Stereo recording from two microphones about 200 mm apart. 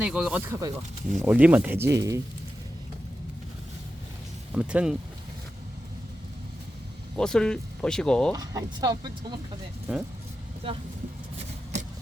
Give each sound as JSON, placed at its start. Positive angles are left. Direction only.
{"t": 0.0, "sound": "speech", "side_deg": -5}
{"t": 4.5, "sound": "speech", "side_deg": -5}
{"t": 7.2, "sound": "speech", "side_deg": 5}
{"t": 8.3, "sound": "speech", "side_deg": -20}
{"t": 10.6, "sound": "speech", "side_deg": -25}
{"t": 11.7, "sound": "scissors", "side_deg": -35}